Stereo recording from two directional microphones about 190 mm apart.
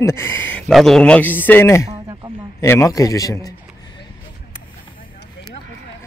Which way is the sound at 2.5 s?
15° left (ahead or behind).